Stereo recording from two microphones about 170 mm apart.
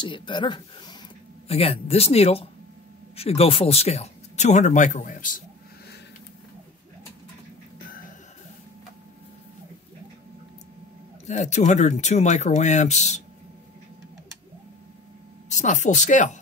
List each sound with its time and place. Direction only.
0.0 s speech: 30° left (ahead or behind); by 5.4 s 50° left (ahead or behind)
11.2 s speech: 40° left (ahead or behind)
15.5 s speech: 45° left (ahead or behind)